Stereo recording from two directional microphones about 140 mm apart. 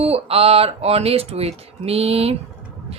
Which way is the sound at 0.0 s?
45° right (ahead or behind).